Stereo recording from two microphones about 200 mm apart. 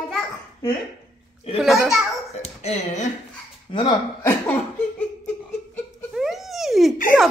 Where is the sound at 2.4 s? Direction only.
35° left (ahead or behind).